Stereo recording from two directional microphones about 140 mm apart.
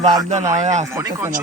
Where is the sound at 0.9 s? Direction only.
20° right (ahead or behind).